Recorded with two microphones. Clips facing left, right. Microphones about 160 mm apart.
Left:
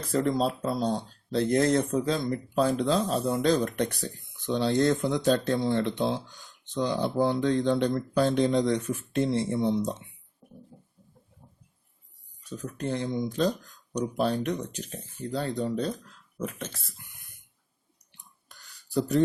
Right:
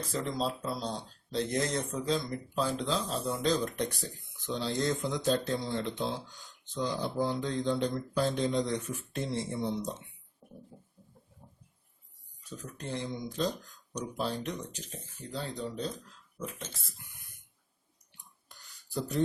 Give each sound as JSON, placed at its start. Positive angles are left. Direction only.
{"t": 0.1, "sound": "speech", "side_deg": 55}
{"t": 12.7, "sound": "speech", "side_deg": 60}